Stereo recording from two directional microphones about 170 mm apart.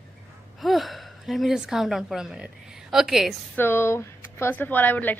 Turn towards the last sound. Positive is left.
turn(degrees=10)  # may be behind; listen again after turning